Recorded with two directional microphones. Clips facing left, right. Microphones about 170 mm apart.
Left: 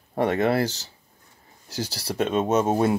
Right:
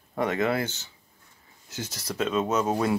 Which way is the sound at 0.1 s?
30° left (ahead or behind).